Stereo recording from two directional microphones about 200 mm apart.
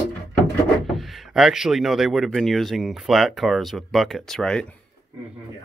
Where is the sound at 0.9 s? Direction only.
Centre (ahead or behind).